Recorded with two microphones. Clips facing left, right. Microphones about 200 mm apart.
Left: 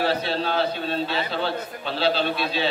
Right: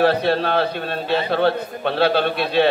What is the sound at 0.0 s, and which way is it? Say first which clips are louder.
A man's voice: right 7 dB; 60° right (ahead or behind).